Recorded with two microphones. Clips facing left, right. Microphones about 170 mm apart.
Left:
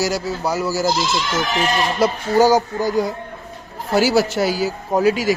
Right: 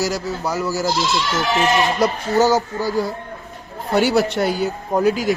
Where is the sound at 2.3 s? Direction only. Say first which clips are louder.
Left 3 dB; 10° left (ahead or behind).